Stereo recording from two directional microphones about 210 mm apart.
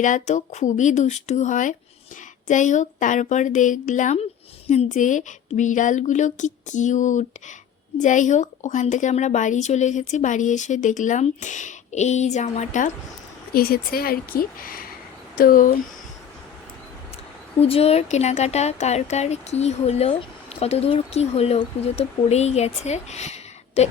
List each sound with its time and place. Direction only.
0.0 s a woman's voice: 35° left (ahead or behind)
13.5 s a woman's voice: 45° left (ahead or behind)
17.6 s a woman's voice: 30° left (ahead or behind)